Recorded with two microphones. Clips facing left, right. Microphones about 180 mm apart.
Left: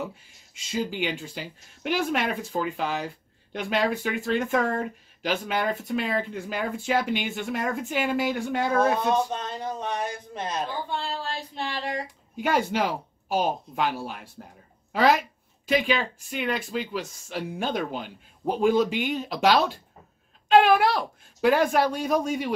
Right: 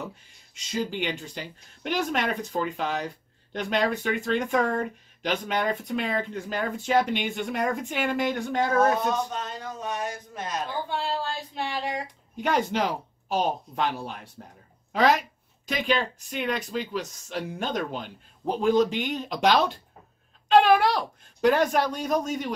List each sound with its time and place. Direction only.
0.0 s speech: 5° left (ahead or behind)
9.3 s speech: 30° left (ahead or behind)
11.9 s speech: 5° left (ahead or behind)